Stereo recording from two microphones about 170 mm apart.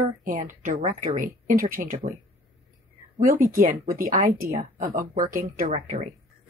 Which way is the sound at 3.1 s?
50° right (ahead or behind).